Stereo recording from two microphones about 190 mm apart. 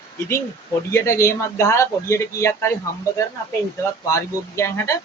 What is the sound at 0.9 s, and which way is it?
Speech, 15° left (ahead or behind).